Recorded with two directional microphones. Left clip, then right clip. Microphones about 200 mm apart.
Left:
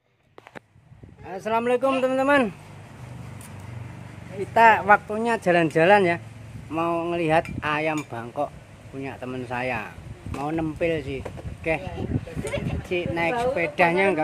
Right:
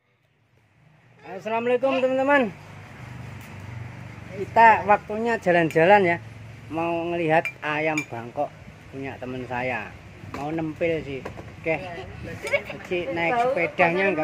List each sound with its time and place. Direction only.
1.3 s speech: 15° left (ahead or behind)
4.6 s speech: 5° left (ahead or behind)
12.4 s speech: 25° right (ahead or behind)
12.9 s speech: 5° left (ahead or behind)